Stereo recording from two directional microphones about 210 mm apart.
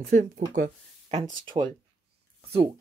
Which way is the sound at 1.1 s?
20° right (ahead or behind).